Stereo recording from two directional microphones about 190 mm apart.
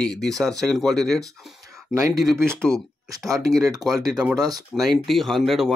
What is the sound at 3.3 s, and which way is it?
Speech, 20° right (ahead or behind).